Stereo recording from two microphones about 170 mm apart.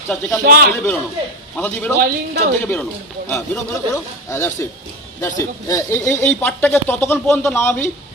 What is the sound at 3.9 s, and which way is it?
Speech, 15° left (ahead or behind).